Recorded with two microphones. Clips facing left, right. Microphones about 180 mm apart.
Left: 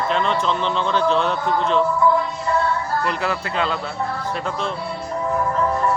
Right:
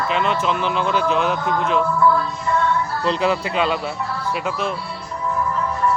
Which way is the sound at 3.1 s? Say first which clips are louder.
Right 4 dB; 20° right (ahead or behind).